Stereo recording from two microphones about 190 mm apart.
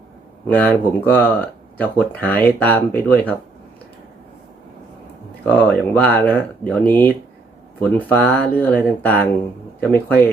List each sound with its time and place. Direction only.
0.4 s speech: 10° left (ahead or behind)
5.5 s speech: 5° left (ahead or behind)